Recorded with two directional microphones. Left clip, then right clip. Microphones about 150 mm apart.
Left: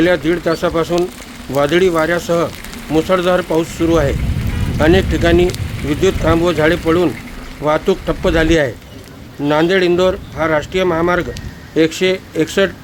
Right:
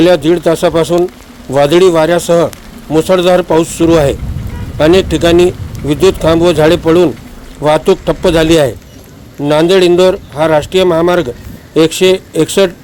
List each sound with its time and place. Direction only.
0.0 s speech: 25° right (ahead or behind)